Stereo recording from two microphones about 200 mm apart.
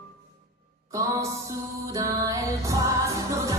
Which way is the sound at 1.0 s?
15° right (ahead or behind).